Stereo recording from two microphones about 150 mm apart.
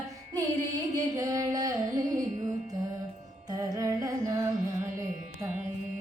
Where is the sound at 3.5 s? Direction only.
20° right (ahead or behind).